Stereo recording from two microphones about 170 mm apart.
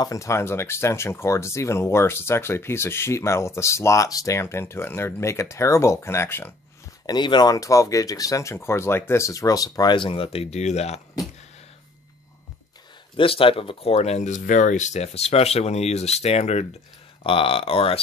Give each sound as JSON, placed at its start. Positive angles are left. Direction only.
{"t": 0.0, "sound": "speech", "side_deg": 20}
{"t": 7.1, "sound": "speech", "side_deg": 25}
{"t": 13.1, "sound": "speech", "side_deg": 30}